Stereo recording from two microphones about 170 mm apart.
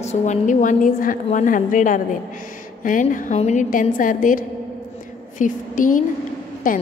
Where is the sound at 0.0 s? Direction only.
45° left (ahead or behind).